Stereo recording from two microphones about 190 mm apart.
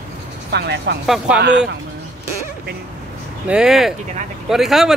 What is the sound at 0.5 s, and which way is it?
A woman's voice, 60° right (ahead or behind).